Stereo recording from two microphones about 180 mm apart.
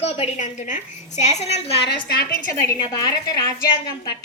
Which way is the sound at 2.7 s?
20° left (ahead or behind).